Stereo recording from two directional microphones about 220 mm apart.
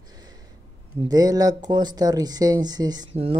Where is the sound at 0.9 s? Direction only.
15° right (ahead or behind).